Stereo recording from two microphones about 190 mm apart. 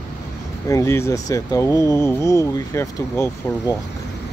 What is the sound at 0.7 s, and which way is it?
Speech, 15° left (ahead or behind).